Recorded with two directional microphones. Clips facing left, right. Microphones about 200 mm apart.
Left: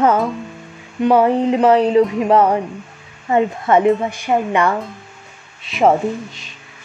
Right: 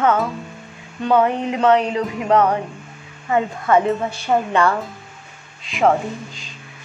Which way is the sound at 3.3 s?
25° left (ahead or behind).